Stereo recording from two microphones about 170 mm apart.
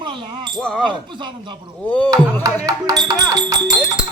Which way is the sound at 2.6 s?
20° right (ahead or behind).